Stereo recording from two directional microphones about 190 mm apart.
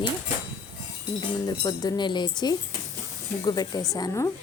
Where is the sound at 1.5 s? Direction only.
20° left (ahead or behind).